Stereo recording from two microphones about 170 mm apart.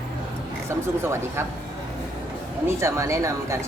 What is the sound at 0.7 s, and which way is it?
Speech, 15° right (ahead or behind).